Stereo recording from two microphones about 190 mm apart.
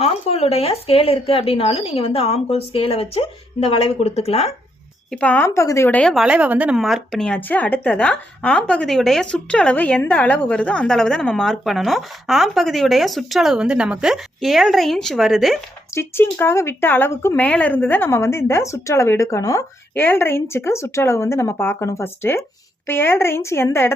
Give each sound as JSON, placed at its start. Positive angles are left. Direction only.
{"t": 0.0, "sound": "speech", "side_deg": 30}
{"t": 5.1, "sound": "speech", "side_deg": 10}
{"t": 16.0, "sound": "speech", "side_deg": 10}